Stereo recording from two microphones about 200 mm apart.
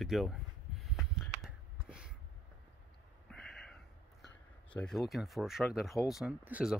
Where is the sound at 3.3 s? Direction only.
Centre (ahead or behind).